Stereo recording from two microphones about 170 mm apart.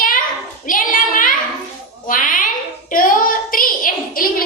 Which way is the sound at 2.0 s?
50° left (ahead or behind).